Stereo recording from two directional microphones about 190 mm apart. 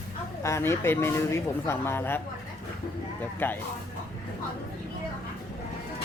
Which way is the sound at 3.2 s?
10° left (ahead or behind).